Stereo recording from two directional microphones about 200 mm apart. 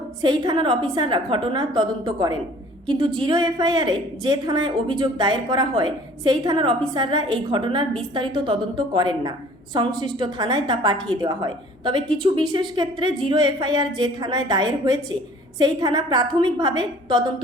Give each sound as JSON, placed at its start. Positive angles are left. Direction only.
{"t": 0.2, "sound": "a woman's voice", "side_deg": -20}